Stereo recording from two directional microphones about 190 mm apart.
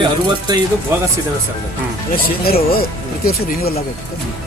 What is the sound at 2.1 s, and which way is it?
Speech, 50° left (ahead or behind).